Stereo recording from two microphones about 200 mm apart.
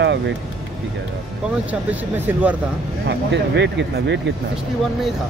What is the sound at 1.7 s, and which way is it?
Speech, 10° right (ahead or behind).